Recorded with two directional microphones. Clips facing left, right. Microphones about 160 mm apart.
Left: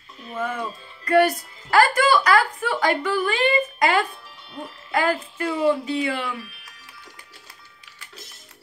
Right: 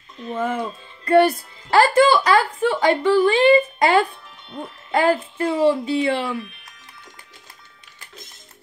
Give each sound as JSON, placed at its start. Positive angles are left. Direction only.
{"t": 0.3, "sound": "speech", "side_deg": -25}